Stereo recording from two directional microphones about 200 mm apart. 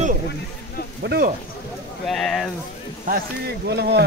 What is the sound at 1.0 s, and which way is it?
Speech, 50° right (ahead or behind).